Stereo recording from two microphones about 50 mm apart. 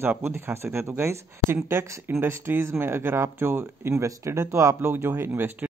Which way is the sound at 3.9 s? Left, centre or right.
Right.